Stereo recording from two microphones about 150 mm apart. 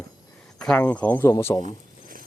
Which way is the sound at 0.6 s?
5° left (ahead or behind).